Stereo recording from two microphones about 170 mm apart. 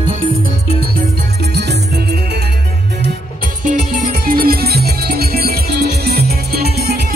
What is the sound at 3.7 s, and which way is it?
Music, 60° right (ahead or behind).